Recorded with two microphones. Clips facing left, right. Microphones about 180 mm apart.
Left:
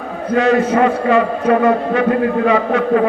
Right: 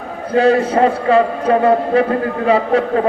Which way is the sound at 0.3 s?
30° right (ahead or behind).